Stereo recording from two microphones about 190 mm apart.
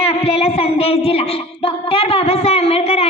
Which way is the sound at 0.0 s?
30° left (ahead or behind).